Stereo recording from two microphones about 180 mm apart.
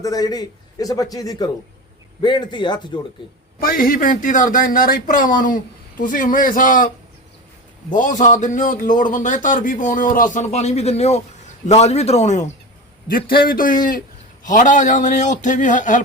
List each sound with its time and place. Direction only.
0.0 s a man's voice: 20° left (ahead or behind)
3.6 s a man's voice: 55° left (ahead or behind)
13.1 s a man's voice: 55° left (ahead or behind)